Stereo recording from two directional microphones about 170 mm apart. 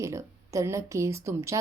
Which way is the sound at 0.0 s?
20° right (ahead or behind).